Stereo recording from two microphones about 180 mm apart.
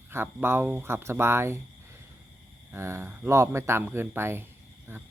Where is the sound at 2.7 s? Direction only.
15° right (ahead or behind).